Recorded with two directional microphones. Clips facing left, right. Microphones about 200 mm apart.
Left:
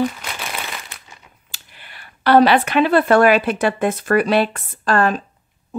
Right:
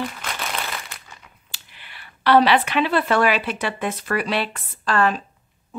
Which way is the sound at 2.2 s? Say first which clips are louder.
Left 3 dB; 45° left (ahead or behind).